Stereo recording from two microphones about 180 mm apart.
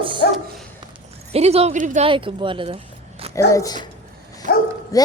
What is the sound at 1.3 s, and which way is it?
Speech, 35° right (ahead or behind).